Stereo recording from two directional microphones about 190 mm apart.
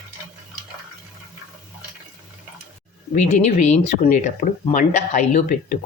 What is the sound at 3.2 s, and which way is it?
Speech, 40° left (ahead or behind).